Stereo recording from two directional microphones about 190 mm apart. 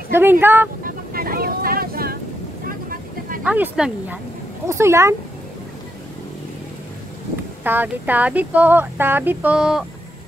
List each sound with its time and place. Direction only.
0.1 s speech: 10° right (ahead or behind)
0.8 s vehicle: 50° right (ahead or behind)
3.4 s speech: 10° right (ahead or behind)
7.6 s speech: 10° right (ahead or behind)